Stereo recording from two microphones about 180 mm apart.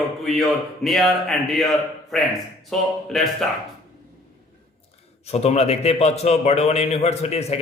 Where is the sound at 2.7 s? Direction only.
Centre (ahead or behind).